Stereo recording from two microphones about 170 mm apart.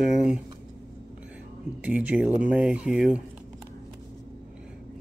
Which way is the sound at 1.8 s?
10° right (ahead or behind).